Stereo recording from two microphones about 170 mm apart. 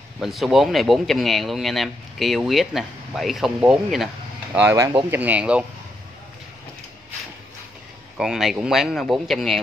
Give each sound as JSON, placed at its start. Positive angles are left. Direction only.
{"t": 0.2, "sound": "speech", "side_deg": 0}
{"t": 4.6, "sound": "speech", "side_deg": -20}
{"t": 8.2, "sound": "speech", "side_deg": 0}